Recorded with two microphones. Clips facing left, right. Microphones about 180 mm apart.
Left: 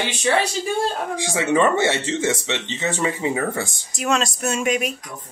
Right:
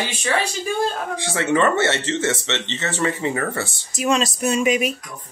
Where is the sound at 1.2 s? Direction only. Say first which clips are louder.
Left 1 dB; 15° left (ahead or behind).